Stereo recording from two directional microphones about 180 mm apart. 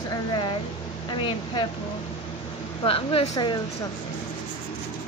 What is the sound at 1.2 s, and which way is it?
Speech, 25° left (ahead or behind).